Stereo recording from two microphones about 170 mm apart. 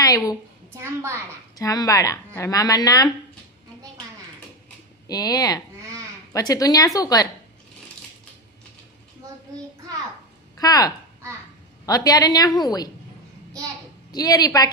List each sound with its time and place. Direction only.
0.0 s a woman's voice: 20° left (ahead or behind)
0.7 s a child's voice: 15° right (ahead or behind)
1.5 s speech: 20° left (ahead or behind)
5.0 s speech: 20° left (ahead or behind)
10.6 s speech: 20° left (ahead or behind)
14.1 s speech: 20° left (ahead or behind)